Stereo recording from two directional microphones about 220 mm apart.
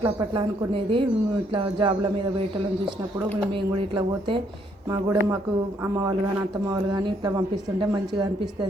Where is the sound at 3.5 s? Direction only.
20° right (ahead or behind).